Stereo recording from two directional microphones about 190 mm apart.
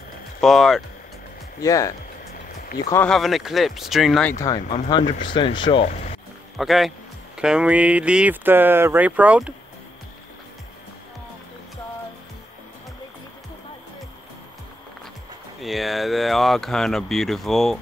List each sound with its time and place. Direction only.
0.4 s speech: centre (ahead or behind)
1.6 s speech: 15° left (ahead or behind)
2.7 s speech: 50° left (ahead or behind)
3.1 s speech: centre (ahead or behind)
4.8 s speech: 25° left (ahead or behind)
6.6 s speech: centre (ahead or behind)
15.6 s speech: centre (ahead or behind)